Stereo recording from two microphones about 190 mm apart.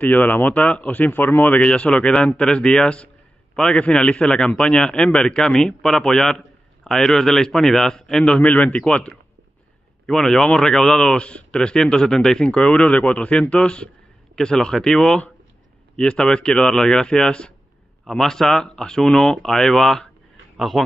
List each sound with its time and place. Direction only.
0.0 s a man's voice: 10° left (ahead or behind)